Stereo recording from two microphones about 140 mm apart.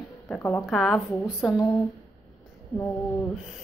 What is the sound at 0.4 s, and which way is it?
Speech, 20° left (ahead or behind).